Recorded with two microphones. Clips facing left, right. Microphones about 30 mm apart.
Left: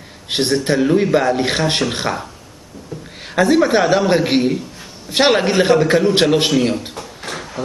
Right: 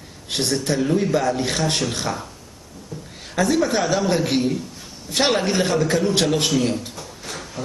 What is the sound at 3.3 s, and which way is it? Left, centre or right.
A man's voice, left.